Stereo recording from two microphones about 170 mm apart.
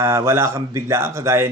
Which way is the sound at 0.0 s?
15° right (ahead or behind).